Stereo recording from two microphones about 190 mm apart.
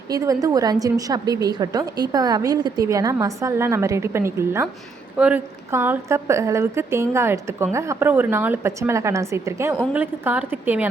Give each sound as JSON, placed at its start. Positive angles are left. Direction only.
{"t": 0.1, "sound": "a woman's voice", "side_deg": -20}